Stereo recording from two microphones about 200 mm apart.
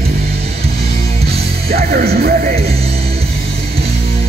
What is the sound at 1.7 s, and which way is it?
Speech, 50° right (ahead or behind).